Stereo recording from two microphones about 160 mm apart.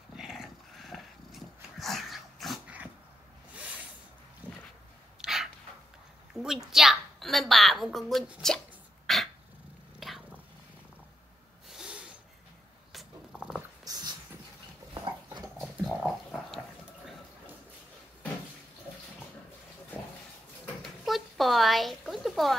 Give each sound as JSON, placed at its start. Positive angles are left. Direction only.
{"t": 0.1, "sound": "dog", "side_deg": 0}
{"t": 4.4, "sound": "a sound", "side_deg": -10}
{"t": 5.2, "sound": "a sound", "side_deg": 0}
{"t": 6.3, "sound": "a woman's voice", "side_deg": 0}
{"t": 9.0, "sound": "dog", "side_deg": 0}
{"t": 9.9, "sound": "cat", "side_deg": 0}
{"t": 11.7, "sound": "snort", "side_deg": -5}
{"t": 12.9, "sound": "purr", "side_deg": -5}
{"t": 13.8, "sound": "a sound", "side_deg": -25}
{"t": 15.0, "sound": "dog", "side_deg": -25}
{"t": 15.6, "sound": "pig", "side_deg": 0}
{"t": 20.8, "sound": "a sound", "side_deg": 0}